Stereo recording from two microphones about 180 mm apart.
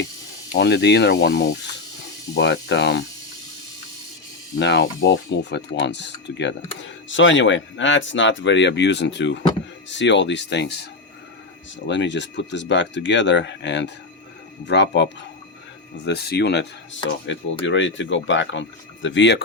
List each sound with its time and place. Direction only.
0.5 s speech: 70° left (ahead or behind)
2.3 s speech: 70° left (ahead or behind)
4.6 s speech: 85° left
6.7 s speech: 90° left; by 10.8 s 70° left (ahead or behind)
11.9 s speech: 85° left